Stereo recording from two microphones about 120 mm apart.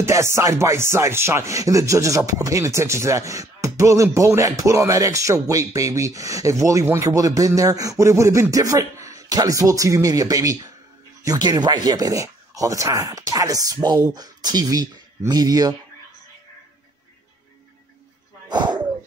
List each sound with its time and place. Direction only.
0.0 s music: 25° right (ahead or behind)
11.2 s speech: 35° right (ahead or behind)
18.5 s dog: 40° right (ahead or behind)